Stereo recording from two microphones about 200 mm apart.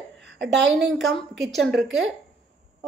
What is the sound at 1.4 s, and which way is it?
Speech, centre (ahead or behind).